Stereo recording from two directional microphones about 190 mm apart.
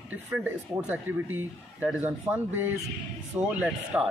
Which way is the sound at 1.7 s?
10° right (ahead or behind).